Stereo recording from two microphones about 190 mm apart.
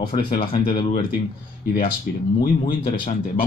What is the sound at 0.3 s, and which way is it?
Speech, 25° left (ahead or behind).